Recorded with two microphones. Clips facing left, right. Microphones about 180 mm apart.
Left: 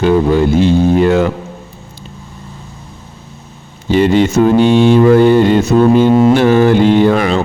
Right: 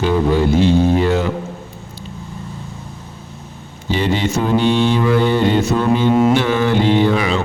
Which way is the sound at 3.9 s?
50° left (ahead or behind).